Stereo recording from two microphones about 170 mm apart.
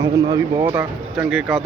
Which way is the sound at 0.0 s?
20° right (ahead or behind).